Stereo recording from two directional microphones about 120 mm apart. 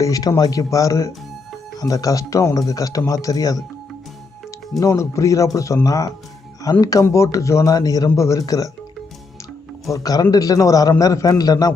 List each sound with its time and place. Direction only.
0.0 s speech: 30° left (ahead or behind)
4.8 s a man's voice: 25° left (ahead or behind)
9.9 s a man's voice: 30° left (ahead or behind)